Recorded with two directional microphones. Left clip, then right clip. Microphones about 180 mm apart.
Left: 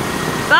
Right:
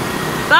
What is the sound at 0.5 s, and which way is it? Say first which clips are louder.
Speech: right 1 dB; 40° right (ahead or behind).